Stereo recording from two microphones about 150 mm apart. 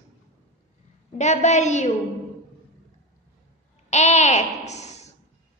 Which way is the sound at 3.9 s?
50° left (ahead or behind).